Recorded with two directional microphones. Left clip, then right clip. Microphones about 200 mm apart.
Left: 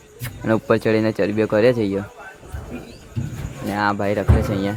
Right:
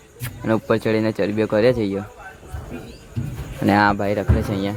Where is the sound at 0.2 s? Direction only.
5° left (ahead or behind).